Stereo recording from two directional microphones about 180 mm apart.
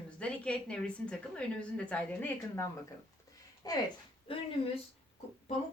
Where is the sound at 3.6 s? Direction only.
20° left (ahead or behind).